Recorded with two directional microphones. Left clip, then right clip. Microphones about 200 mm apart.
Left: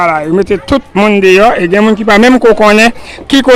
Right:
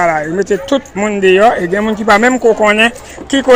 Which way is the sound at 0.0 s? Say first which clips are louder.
Left 3 dB; 20° left (ahead or behind).